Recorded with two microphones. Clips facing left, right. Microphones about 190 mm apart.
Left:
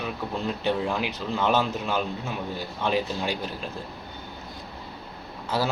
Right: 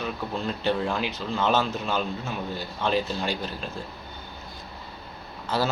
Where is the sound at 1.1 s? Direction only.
15° left (ahead or behind).